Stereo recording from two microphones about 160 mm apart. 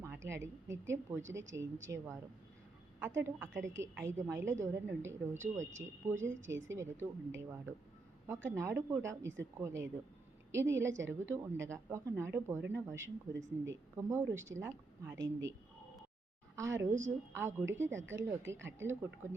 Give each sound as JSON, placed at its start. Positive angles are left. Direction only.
{"t": 0.0, "sound": "a woman's voice", "side_deg": -15}
{"t": 16.6, "sound": "a woman's voice", "side_deg": -20}